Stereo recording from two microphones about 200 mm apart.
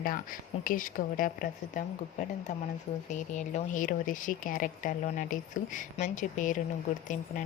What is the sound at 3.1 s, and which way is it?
Speech, 40° left (ahead or behind).